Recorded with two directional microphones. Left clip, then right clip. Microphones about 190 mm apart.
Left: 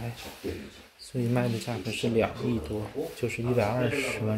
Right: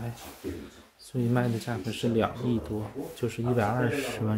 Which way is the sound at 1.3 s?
30° right (ahead or behind).